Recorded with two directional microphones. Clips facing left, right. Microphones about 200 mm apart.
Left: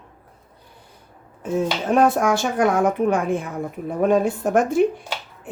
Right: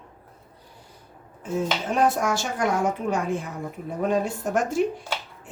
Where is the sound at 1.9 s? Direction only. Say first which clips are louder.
Left 6 dB; 60° left (ahead or behind).